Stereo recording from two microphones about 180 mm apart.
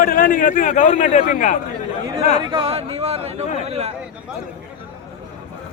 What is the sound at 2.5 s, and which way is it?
Speech, 30° right (ahead or behind).